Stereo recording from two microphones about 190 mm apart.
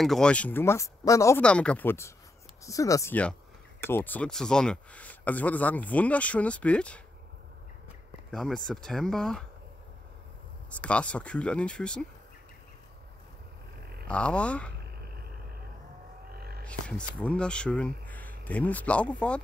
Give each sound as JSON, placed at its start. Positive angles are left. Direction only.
{"t": 0.0, "sound": "speech", "side_deg": 5}
{"t": 8.3, "sound": "speech", "side_deg": 0}
{"t": 10.8, "sound": "speech", "side_deg": 5}
{"t": 14.0, "sound": "speech", "side_deg": 5}
{"t": 16.3, "sound": "a sound", "side_deg": -55}
{"t": 16.6, "sound": "speech", "side_deg": 5}